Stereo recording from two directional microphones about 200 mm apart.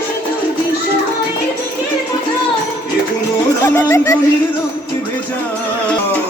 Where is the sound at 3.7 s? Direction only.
10° left (ahead or behind).